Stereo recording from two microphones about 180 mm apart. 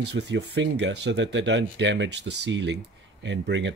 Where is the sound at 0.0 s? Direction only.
75° right (ahead or behind).